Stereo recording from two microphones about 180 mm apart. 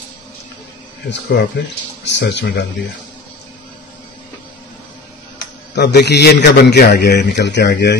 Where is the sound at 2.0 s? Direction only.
75° left (ahead or behind).